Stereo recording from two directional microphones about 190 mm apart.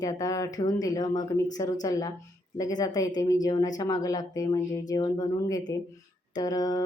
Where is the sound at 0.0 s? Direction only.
20° left (ahead or behind).